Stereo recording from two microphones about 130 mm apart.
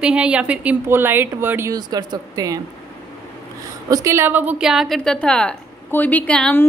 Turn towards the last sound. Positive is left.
turn(degrees=10)  # may be behind; listen again after turning